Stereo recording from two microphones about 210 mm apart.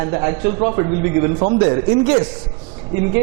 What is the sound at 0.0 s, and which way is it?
A man's voice, 20° right (ahead or behind).